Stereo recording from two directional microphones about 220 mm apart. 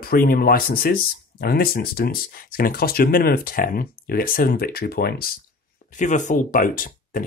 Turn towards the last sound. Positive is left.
turn(degrees=40)  # may be behind; listen again after turning